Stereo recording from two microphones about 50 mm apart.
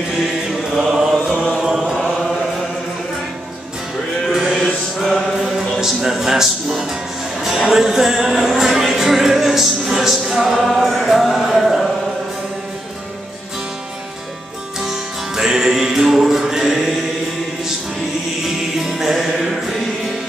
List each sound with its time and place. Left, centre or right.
0.5 s chant: centre
4.3 s sheep: centre
4.6 s music: centre
5.4 s music: centre
14.8 s music: centre
18.9 s music: centre